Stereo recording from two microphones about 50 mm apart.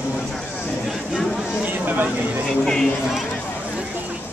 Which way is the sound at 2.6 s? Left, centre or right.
Centre.